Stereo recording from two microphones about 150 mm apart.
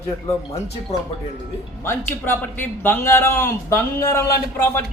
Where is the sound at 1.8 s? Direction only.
15° left (ahead or behind).